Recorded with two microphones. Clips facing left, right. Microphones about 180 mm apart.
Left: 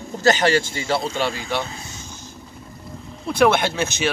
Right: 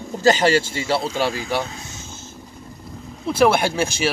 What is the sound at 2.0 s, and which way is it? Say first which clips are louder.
Vehicle: even; 15° left (ahead or behind).